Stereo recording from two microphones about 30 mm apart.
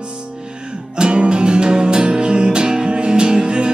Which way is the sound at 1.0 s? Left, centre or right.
Right.